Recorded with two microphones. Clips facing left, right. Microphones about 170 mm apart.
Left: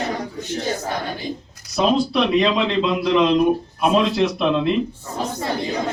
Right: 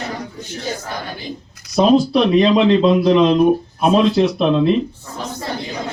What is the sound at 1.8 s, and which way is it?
Speech, 35° right (ahead or behind).